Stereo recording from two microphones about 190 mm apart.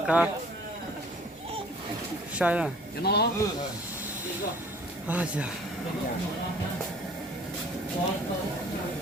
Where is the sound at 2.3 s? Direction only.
5° right (ahead or behind).